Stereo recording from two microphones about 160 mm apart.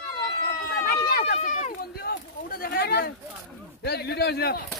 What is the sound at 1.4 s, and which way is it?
Run, 45° left (ahead or behind).